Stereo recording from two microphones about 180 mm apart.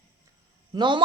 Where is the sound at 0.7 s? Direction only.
25° right (ahead or behind).